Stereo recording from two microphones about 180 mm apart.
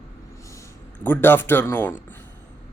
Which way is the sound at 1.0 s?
10° left (ahead or behind).